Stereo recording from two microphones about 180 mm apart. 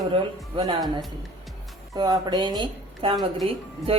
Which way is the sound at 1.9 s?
20° right (ahead or behind).